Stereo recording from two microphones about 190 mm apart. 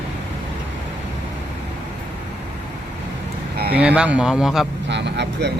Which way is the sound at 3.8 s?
5° right (ahead or behind).